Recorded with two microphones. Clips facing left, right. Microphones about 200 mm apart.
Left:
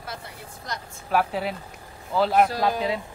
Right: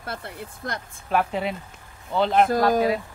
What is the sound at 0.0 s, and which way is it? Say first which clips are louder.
Speech: right 4 dB; 55° right (ahead or behind).